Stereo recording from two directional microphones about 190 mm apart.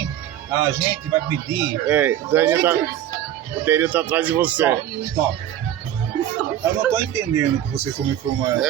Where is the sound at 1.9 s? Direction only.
10° right (ahead or behind).